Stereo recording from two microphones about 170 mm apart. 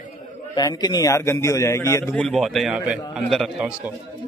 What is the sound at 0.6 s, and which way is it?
A man's voice, 25° left (ahead or behind).